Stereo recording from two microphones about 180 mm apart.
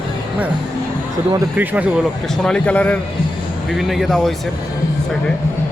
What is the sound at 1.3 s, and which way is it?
Speech, 15° right (ahead or behind).